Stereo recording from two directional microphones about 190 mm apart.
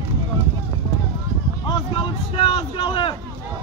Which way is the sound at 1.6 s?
25° left (ahead or behind).